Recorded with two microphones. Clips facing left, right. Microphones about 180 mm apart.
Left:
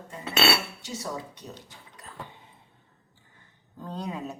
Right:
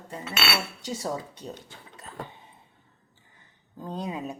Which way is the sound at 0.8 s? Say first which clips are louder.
Right 3 dB; 30° right (ahead or behind).